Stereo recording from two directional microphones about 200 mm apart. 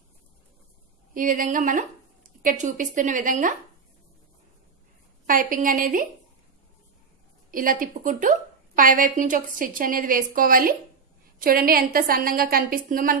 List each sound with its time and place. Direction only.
1.1 s a woman's voice: 40° right (ahead or behind)
5.2 s a woman's voice: 45° right (ahead or behind)
7.5 s a woman's voice: 45° right (ahead or behind)